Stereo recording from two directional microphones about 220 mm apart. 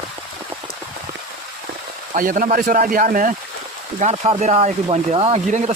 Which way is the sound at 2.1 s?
40° right (ahead or behind).